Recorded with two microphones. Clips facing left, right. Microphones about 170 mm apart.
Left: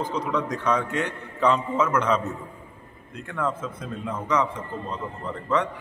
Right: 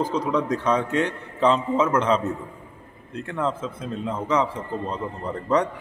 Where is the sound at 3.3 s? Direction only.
25° right (ahead or behind).